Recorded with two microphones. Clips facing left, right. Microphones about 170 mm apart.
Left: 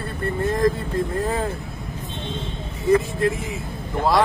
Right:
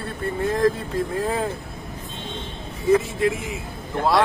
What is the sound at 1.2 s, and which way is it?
Speech, 5° right (ahead or behind).